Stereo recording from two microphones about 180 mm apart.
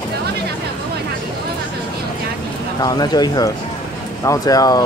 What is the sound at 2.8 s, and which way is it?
Speech, 20° left (ahead or behind).